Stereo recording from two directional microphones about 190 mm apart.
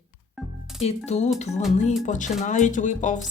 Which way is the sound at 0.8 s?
35° left (ahead or behind).